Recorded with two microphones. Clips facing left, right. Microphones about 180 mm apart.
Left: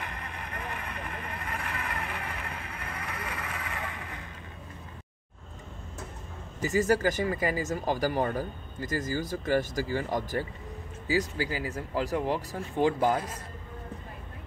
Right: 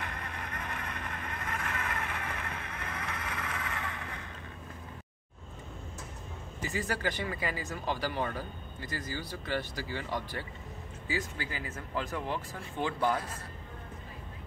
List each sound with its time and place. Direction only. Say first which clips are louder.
0.0 s vehicle: left 1 dB; 15° left (ahead or behind)
6.6 s speech: left 9 dB; 40° left (ahead or behind)